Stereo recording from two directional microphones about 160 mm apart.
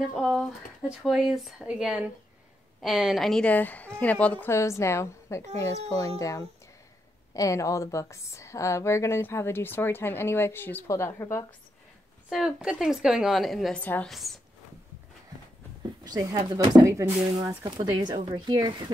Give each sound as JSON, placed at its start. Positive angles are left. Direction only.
{"t": 0.1, "sound": "a woman's voice", "side_deg": -5}
{"t": 12.3, "sound": "a woman's voice", "side_deg": -5}
{"t": 16.0, "sound": "speech", "side_deg": -20}